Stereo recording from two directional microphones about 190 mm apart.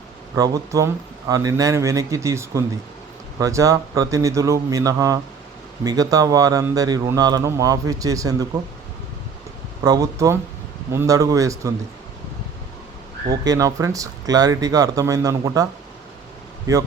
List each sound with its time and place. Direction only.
0.3 s speech: 20° right (ahead or behind)
9.8 s speech: 20° right (ahead or behind)
13.3 s speech: 20° right (ahead or behind)